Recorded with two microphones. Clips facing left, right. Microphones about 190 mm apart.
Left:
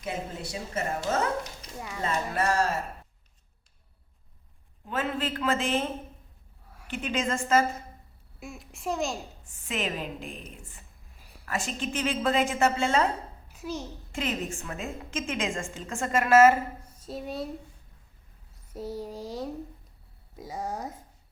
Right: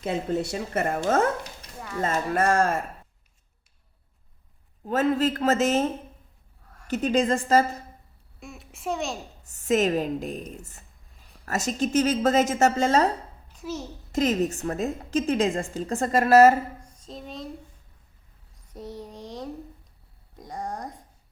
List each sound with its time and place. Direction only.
0.7 s speech: 60° right (ahead or behind)
4.9 s a woman's voice: 40° right (ahead or behind)
8.4 s a child's voice: centre (ahead or behind)
9.5 s a woman's voice: 40° right (ahead or behind)
11.2 s a sound: 10° left (ahead or behind)
11.4 s a woman's voice: 40° right (ahead or behind)
13.5 s a sound: centre (ahead or behind)
14.1 s a woman's voice: 40° right (ahead or behind)
16.8 s a sound: 5° left (ahead or behind)
18.7 s a child's voice: centre (ahead or behind)